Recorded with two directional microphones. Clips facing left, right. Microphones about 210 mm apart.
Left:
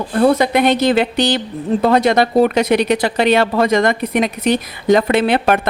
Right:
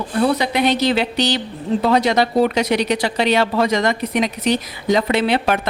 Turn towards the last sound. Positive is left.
turn(degrees=50)  # may be behind; listen again after turning